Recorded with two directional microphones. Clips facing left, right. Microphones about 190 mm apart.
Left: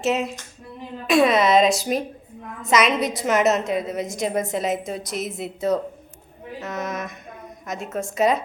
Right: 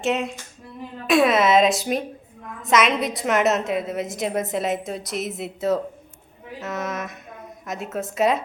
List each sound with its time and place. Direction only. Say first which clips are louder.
0.0 s a woman's voice: left 1 dB; centre (ahead or behind)